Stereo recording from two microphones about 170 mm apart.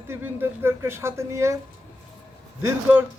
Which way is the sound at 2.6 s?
10° right (ahead or behind).